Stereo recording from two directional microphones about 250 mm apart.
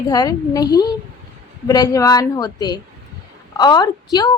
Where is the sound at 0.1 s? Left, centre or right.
Centre.